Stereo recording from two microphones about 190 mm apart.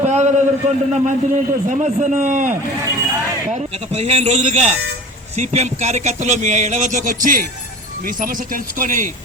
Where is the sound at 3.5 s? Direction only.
30° right (ahead or behind).